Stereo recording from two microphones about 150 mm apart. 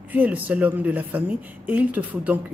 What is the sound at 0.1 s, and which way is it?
Speech, 10° right (ahead or behind).